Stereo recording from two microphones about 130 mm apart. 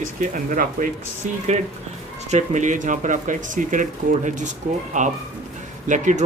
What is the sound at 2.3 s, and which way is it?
Speech, 70° right (ahead or behind).